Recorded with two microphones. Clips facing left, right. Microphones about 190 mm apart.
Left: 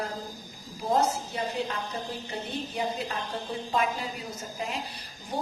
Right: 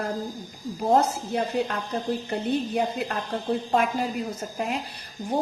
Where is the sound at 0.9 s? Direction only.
55° right (ahead or behind).